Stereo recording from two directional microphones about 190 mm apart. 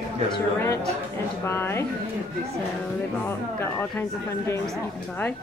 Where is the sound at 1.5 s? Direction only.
10° left (ahead or behind).